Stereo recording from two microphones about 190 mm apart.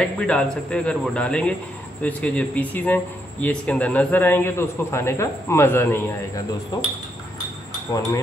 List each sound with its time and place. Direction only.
0.0 s a man's voice: 5° left (ahead or behind)
7.9 s speech: 20° left (ahead or behind)